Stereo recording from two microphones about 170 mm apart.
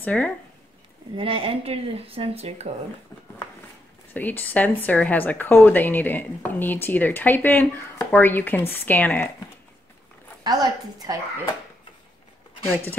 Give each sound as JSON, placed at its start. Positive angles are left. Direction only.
{"t": 0.0, "sound": "speech", "side_deg": 10}
{"t": 1.1, "sound": "speech", "side_deg": -35}
{"t": 4.1, "sound": "a woman's voice", "side_deg": 10}
{"t": 10.4, "sound": "a woman's voice", "side_deg": -25}